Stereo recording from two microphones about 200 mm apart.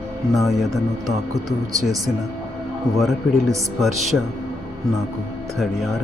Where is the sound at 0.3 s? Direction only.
Centre (ahead or behind).